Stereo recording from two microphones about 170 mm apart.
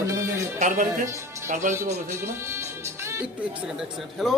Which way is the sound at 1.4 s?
45° right (ahead or behind).